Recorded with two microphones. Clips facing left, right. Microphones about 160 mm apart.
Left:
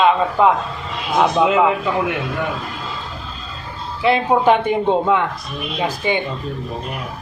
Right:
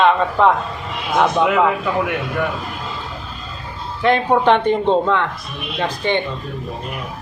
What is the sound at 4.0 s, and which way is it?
A man's voice, 5° left (ahead or behind).